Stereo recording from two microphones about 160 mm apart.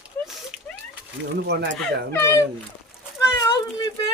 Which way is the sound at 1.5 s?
90° right.